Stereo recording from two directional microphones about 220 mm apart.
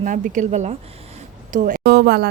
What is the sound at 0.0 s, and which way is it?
Speech, 35° right (ahead or behind).